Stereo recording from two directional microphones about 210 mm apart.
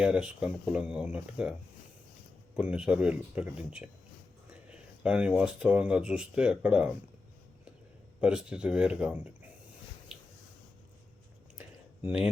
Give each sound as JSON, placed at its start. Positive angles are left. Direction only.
{"t": 0.0, "sound": "speech", "side_deg": -5}
{"t": 2.6, "sound": "speech", "side_deg": -5}
{"t": 5.0, "sound": "speech", "side_deg": -5}
{"t": 8.2, "sound": "speech", "side_deg": -5}
{"t": 12.0, "sound": "speech", "side_deg": -5}